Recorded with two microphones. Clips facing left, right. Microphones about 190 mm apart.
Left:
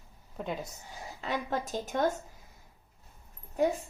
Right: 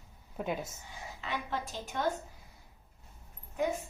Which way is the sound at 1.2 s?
40° left (ahead or behind).